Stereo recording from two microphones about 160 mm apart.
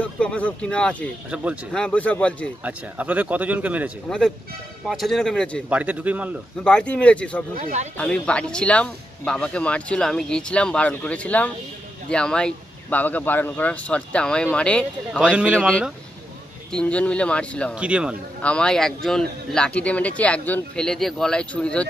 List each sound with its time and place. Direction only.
0.0 s speech: 5° left (ahead or behind)
1.3 s speech: 10° right (ahead or behind)
1.7 s speech: 5° left (ahead or behind)
2.6 s speech: 10° right (ahead or behind)
4.8 s speech: centre (ahead or behind)
5.7 s speech: 10° right (ahead or behind)
6.6 s speech: 5° left (ahead or behind)
7.5 s speech: 50° right (ahead or behind)
8.0 s speech: 5° left (ahead or behind)
15.3 s speech: 10° right (ahead or behind)
16.7 s speech: 5° left (ahead or behind)
17.7 s speech: 5° right (ahead or behind)
18.4 s speech: 5° left (ahead or behind)